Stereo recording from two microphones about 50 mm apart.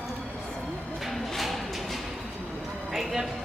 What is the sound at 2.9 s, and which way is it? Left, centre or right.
Clip-clop, centre.